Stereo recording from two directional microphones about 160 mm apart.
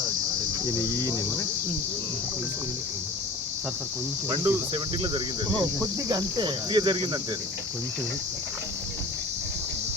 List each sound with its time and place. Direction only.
4.3 s speech: 30° right (ahead or behind)